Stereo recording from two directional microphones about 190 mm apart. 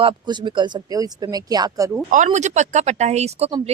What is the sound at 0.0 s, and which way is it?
Speech, 25° right (ahead or behind).